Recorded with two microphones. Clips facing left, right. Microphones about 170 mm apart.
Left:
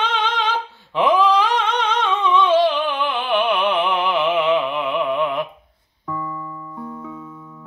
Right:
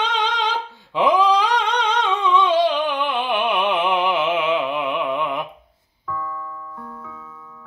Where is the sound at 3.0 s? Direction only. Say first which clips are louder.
Left 1 dB; centre (ahead or behind).